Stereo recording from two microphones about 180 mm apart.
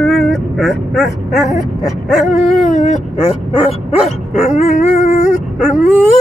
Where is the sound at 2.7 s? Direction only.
45° left (ahead or behind).